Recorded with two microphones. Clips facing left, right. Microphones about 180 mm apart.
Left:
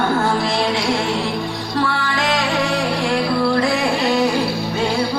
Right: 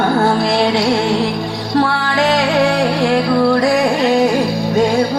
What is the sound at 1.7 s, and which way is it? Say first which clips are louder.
Music: right 6 dB; 35° right (ahead or behind).